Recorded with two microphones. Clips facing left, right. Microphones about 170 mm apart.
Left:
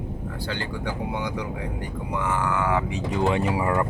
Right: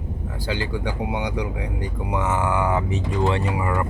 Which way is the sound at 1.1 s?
65° right (ahead or behind).